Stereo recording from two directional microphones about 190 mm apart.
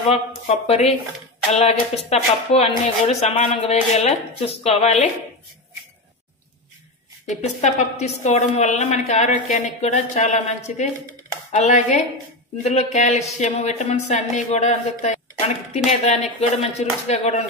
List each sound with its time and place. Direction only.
0.7 s a woman's voice: 35° left (ahead or behind)
7.2 s a woman's voice: 40° left (ahead or behind)